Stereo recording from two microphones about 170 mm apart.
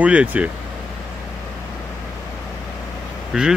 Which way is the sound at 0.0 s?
10° right (ahead or behind).